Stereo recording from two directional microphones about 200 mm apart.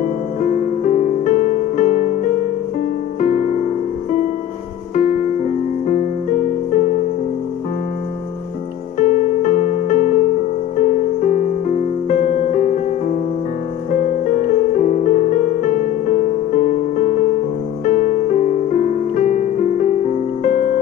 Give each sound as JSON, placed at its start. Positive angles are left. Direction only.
{"t": 0.4, "sound": "music", "side_deg": 35}
{"t": 3.2, "sound": "music", "side_deg": 40}
{"t": 8.9, "sound": "music", "side_deg": 40}